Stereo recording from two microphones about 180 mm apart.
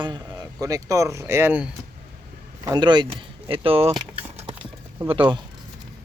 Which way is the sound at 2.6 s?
20° right (ahead or behind).